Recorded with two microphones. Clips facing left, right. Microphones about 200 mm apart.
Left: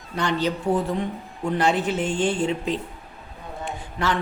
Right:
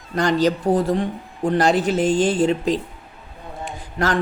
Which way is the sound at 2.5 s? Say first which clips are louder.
Right 5 dB; 35° right (ahead or behind).